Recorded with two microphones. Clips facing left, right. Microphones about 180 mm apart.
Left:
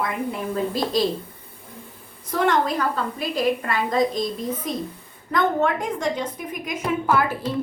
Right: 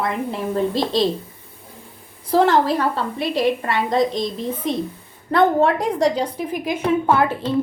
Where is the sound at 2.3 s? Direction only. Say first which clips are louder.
Right 5 dB; 30° right (ahead or behind).